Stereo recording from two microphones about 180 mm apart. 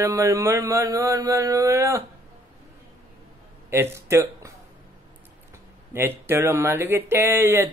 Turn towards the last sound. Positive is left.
turn(degrees=-15)  # may be behind; listen again after turning